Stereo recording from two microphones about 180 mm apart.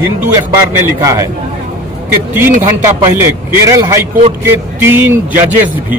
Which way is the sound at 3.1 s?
15° right (ahead or behind).